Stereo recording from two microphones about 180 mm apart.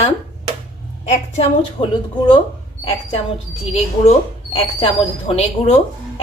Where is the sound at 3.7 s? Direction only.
35° left (ahead or behind).